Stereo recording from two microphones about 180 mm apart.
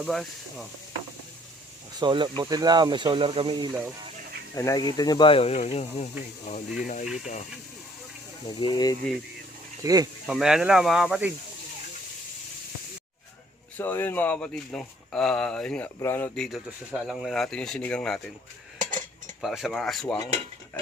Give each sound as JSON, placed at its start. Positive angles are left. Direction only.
{"t": 0.0, "sound": "speech", "side_deg": 0}
{"t": 2.0, "sound": "speech", "side_deg": -25}
{"t": 4.5, "sound": "speech", "side_deg": 20}
{"t": 8.4, "sound": "speech", "side_deg": 25}
{"t": 9.8, "sound": "speech", "side_deg": -20}
{"t": 10.2, "sound": "speech", "side_deg": -5}
{"t": 13.7, "sound": "speech", "side_deg": 10}
{"t": 19.4, "sound": "speech", "side_deg": 0}